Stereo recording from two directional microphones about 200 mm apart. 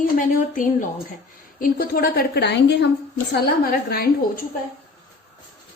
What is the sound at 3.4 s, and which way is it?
A woman's voice, 50° left (ahead or behind).